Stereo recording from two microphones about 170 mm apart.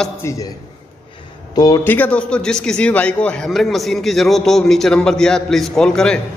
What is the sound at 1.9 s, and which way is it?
A man's voice, 10° left (ahead or behind).